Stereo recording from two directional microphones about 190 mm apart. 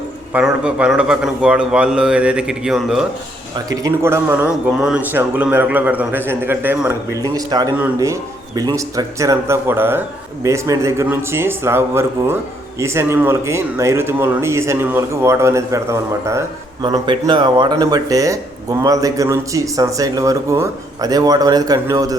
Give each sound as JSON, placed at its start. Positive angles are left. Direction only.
{"t": 0.3, "sound": "a man's voice", "side_deg": -5}
{"t": 3.5, "sound": "a man's voice", "side_deg": -20}